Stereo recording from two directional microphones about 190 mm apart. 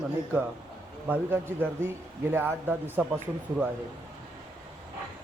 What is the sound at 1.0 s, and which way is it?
A man's voice, 10° right (ahead or behind).